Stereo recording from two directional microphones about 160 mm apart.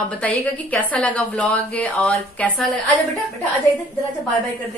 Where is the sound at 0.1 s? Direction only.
10° left (ahead or behind).